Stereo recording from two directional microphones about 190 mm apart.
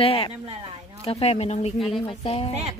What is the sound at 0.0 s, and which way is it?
Speech, 30° left (ahead or behind).